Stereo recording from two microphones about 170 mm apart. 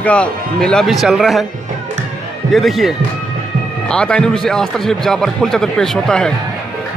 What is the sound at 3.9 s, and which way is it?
Speech, 5° left (ahead or behind).